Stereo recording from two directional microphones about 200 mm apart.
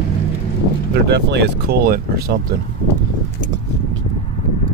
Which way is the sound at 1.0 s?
55° right (ahead or behind).